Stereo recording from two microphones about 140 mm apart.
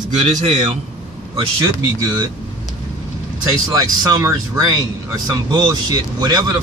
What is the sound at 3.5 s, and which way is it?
Speech, 25° right (ahead or behind).